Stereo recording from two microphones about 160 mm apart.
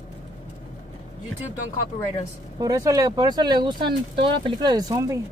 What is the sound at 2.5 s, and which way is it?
Speech, 20° right (ahead or behind).